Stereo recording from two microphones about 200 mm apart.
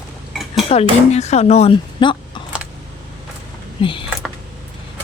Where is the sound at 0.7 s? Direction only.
30° left (ahead or behind).